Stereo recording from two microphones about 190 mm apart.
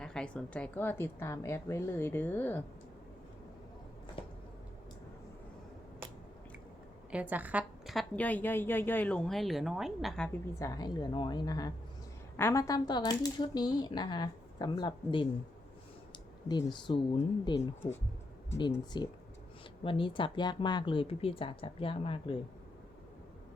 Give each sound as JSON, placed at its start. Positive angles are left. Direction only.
{"t": 0.0, "sound": "a woman's voice", "side_deg": 5}
{"t": 7.1, "sound": "a woman's voice", "side_deg": -5}
{"t": 10.6, "sound": "speech", "side_deg": 20}
{"t": 16.1, "sound": "clicking", "side_deg": 20}
{"t": 16.8, "sound": "speech", "side_deg": 25}
{"t": 18.9, "sound": "speech", "side_deg": 25}